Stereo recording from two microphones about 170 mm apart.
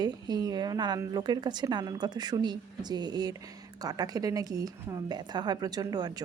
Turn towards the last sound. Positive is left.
turn(degrees=-25)  # may be behind; listen again after turning